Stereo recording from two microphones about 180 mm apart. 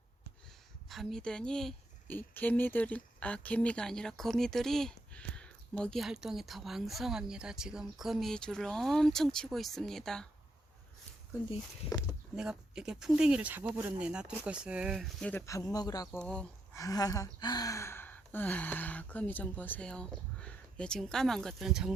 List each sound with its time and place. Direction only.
0.9 s a woman's voice: centre (ahead or behind)
12.4 s a woman's voice: 5° right (ahead or behind); by 16.0 s 20° left (ahead or behind)
16.1 s a woman's voice: 5° left (ahead or behind)
16.7 s speech: 20° left (ahead or behind); by 21.9 s 5° right (ahead or behind)